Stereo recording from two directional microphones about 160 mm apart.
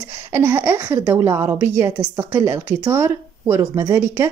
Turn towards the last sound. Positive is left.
turn(degrees=-15)  # may be behind; listen again after turning